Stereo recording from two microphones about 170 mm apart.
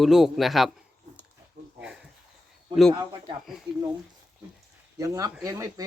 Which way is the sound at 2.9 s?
25° right (ahead or behind).